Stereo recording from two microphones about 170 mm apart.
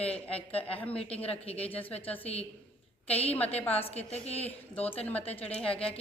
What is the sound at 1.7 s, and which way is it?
Speech, 10° left (ahead or behind).